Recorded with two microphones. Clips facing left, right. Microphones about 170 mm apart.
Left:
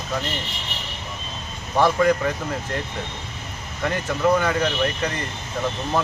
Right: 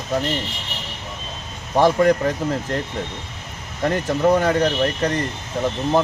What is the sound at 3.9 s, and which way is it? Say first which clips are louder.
Speech: right 3 dB; 35° right (ahead or behind).